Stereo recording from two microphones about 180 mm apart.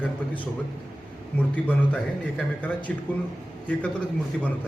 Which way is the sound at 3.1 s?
10° left (ahead or behind).